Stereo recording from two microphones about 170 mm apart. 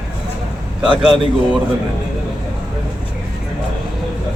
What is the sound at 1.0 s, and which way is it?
Speech, centre (ahead or behind).